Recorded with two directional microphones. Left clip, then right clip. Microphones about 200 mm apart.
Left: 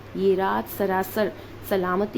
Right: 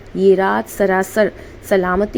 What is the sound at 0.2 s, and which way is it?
A woman's voice, 25° right (ahead or behind).